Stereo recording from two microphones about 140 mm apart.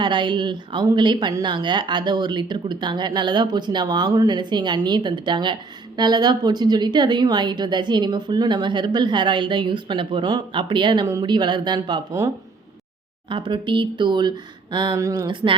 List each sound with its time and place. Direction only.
0.0 s a woman's voice: 35° right (ahead or behind)
13.3 s a woman's voice: 35° right (ahead or behind)